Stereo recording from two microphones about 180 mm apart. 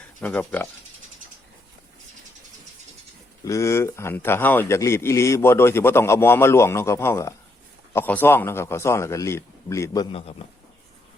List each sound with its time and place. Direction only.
0.2 s speech: 10° left (ahead or behind)
3.4 s speech: 15° left (ahead or behind)
10.1 s a man's voice: 35° left (ahead or behind)